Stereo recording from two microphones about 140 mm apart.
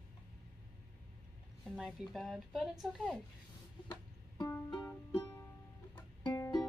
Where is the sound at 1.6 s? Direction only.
Centre (ahead or behind).